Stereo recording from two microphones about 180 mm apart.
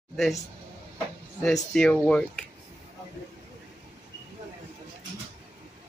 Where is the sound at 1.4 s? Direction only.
5° left (ahead or behind).